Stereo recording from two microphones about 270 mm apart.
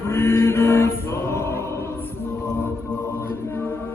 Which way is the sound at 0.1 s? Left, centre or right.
Centre.